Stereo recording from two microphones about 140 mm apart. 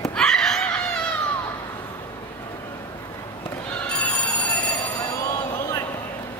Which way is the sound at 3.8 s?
10° left (ahead or behind).